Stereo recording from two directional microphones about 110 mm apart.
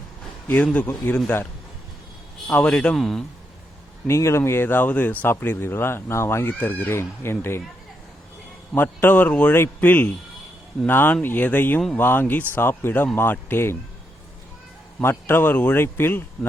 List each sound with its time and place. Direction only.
0.4 s a man's voice: 15° left (ahead or behind)
2.5 s a man's voice: 15° left (ahead or behind)
4.0 s speech: 25° left (ahead or behind)
8.7 s a man's voice: 20° left (ahead or behind)
15.0 s speech: 20° left (ahead or behind)